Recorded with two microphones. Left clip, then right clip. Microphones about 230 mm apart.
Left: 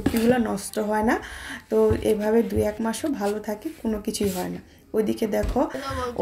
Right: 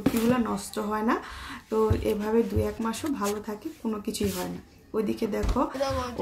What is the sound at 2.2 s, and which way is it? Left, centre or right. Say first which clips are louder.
Speech: left 4 dB; centre.